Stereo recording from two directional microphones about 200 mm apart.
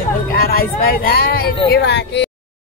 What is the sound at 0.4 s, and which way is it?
Speech, 50° left (ahead or behind).